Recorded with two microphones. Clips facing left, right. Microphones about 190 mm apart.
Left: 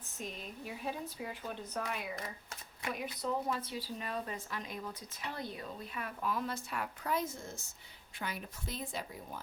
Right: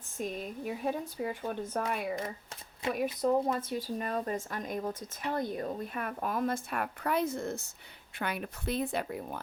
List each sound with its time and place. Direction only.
0.2 s a woman's voice: 45° right (ahead or behind); by 9.4 s 65° right (ahead or behind)